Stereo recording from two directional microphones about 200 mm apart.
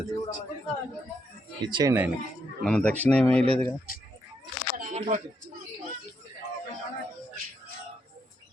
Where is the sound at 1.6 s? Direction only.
20° right (ahead or behind).